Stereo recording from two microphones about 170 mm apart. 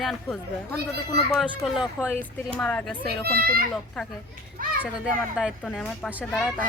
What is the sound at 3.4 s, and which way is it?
Speech, 65° right (ahead or behind).